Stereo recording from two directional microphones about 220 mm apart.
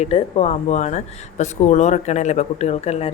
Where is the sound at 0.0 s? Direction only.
30° left (ahead or behind).